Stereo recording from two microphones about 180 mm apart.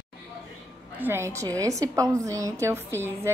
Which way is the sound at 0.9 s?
10° right (ahead or behind).